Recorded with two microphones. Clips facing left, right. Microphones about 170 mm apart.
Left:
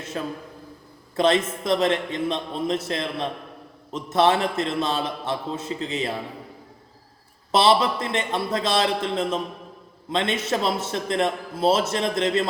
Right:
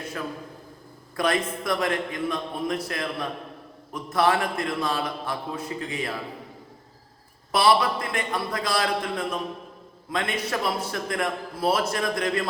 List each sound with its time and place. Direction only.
0.2 s a man's voice: 25° left (ahead or behind)
7.5 s a man's voice: 25° left (ahead or behind)